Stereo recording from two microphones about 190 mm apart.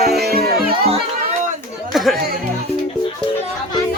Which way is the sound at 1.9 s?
Centre (ahead or behind).